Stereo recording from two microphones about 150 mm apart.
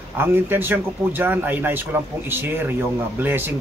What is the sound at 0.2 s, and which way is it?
Speech, 15° right (ahead or behind).